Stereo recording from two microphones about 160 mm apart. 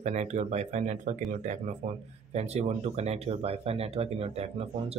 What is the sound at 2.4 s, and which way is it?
Speech, 40° right (ahead or behind).